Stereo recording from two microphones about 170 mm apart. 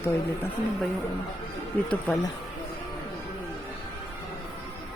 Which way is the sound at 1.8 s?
5° left (ahead or behind).